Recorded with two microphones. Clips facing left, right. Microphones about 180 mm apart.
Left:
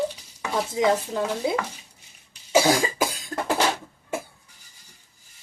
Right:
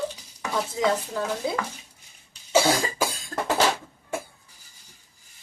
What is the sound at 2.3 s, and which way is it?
Cough, 15° left (ahead or behind).